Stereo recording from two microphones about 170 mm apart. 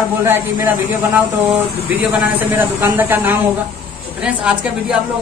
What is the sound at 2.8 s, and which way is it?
A woman's voice, 10° right (ahead or behind).